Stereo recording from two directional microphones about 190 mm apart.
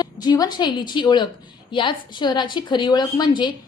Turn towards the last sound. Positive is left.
turn(degrees=25)  # may be behind; listen again after turning